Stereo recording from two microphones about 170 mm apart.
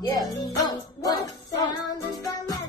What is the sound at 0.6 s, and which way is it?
Music, 25° left (ahead or behind).